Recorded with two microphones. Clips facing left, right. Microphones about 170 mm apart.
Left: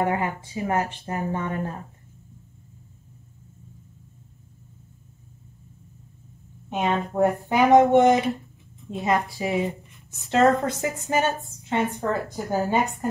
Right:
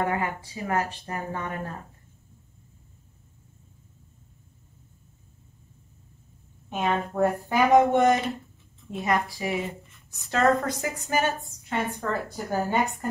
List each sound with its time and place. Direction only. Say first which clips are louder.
0.0 s a woman's voice: left 3 dB; 20° left (ahead or behind)
6.7 s a woman's voice: left 2 dB; 20° left (ahead or behind)